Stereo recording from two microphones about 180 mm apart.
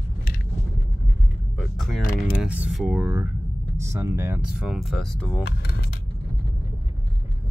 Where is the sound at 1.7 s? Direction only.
Centre (ahead or behind); by 4.3 s 15° right (ahead or behind).